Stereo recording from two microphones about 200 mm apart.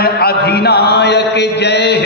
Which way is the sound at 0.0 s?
50° left (ahead or behind).